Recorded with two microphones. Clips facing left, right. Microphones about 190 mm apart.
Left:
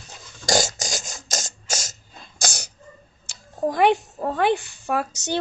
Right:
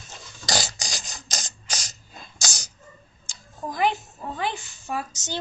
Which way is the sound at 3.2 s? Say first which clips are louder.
Left 10 dB; 65° left (ahead or behind).